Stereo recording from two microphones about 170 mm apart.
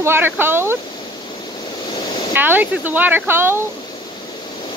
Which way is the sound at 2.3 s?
10° right (ahead or behind).